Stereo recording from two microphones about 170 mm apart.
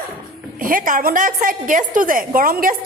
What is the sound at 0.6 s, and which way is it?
A woman's voice, 55° right (ahead or behind).